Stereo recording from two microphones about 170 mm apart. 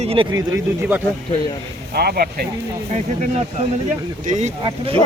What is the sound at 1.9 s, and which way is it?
Speech, 65° right (ahead or behind).